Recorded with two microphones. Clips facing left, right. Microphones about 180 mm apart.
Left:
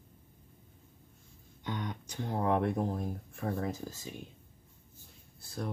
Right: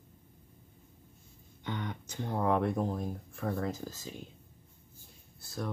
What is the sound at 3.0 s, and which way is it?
Speech, 5° left (ahead or behind).